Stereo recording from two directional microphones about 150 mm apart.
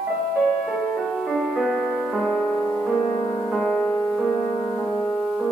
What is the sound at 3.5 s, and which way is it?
Music, 5° left (ahead or behind).